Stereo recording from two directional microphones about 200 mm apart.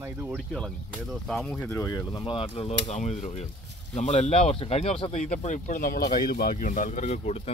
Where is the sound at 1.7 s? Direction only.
15° left (ahead or behind).